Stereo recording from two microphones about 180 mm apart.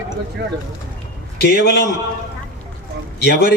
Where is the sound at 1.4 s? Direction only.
65° left (ahead or behind).